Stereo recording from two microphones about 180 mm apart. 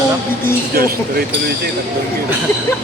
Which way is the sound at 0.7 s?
55° right (ahead or behind).